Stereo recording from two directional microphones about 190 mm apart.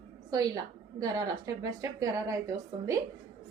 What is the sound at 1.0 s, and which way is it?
A woman's voice, 20° right (ahead or behind).